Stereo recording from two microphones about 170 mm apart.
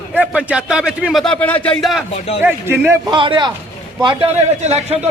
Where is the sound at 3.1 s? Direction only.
30° right (ahead or behind).